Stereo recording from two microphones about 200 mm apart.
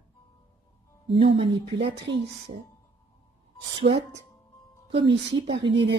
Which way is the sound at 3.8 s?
30° right (ahead or behind).